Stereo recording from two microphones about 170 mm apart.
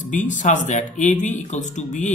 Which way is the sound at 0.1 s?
50° left (ahead or behind).